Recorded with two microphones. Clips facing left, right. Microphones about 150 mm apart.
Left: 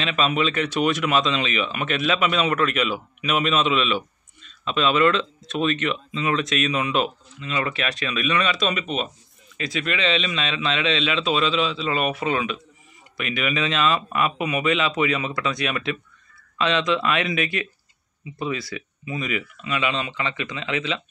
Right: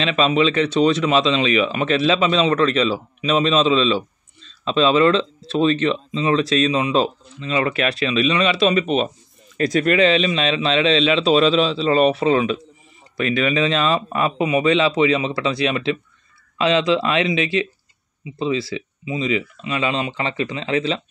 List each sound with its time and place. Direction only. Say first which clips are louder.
0.0 s speech: right 5 dB; 30° right (ahead or behind)
9.6 s speech: right 10 dB; 45° right (ahead or behind)